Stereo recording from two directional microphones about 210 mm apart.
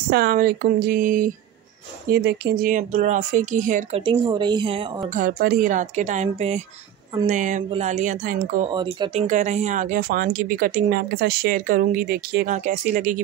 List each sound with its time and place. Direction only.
0.1 s speech: 45° right (ahead or behind)
4.0 s speech: 25° right (ahead or behind)
5.1 s speech: 45° right (ahead or behind)
8.6 s speech: 25° right (ahead or behind)
9.3 s speech: 35° right (ahead or behind)